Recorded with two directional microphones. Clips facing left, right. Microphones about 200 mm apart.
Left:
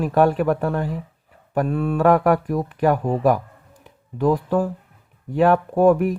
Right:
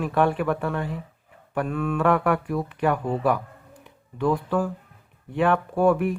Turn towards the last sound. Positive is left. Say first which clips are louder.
# left 4 dB
turn(degrees=40)  # may be behind; listen again after turning